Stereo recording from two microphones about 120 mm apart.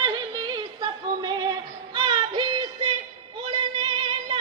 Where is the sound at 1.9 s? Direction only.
40° right (ahead or behind).